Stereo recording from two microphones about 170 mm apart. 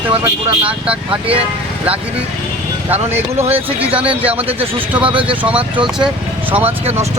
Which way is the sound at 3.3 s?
35° right (ahead or behind).